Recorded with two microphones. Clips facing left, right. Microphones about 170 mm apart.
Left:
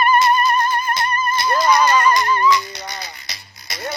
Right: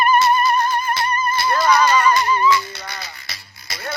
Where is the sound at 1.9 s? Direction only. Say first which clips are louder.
Even; 10° right (ahead or behind).